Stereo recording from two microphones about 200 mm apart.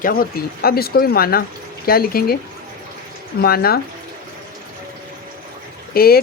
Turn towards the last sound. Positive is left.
turn(degrees=50)  # may be behind; listen again after turning